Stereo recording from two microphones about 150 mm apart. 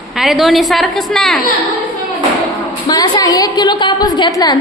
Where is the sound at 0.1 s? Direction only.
Centre (ahead or behind).